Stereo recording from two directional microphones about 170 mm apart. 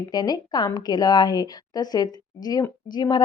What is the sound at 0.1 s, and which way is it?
A woman's voice, 25° left (ahead or behind).